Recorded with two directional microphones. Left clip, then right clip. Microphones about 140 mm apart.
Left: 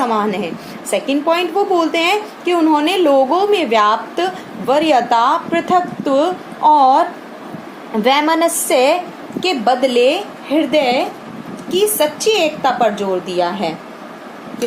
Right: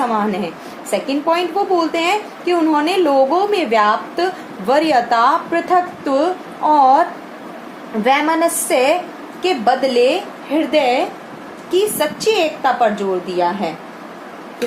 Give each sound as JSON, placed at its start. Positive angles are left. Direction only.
{"t": 0.0, "sound": "a woman's voice", "side_deg": 35}
{"t": 8.0, "sound": "a woman's voice", "side_deg": 45}